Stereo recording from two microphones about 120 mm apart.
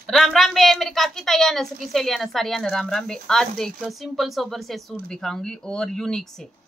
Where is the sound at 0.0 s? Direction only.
5° left (ahead or behind).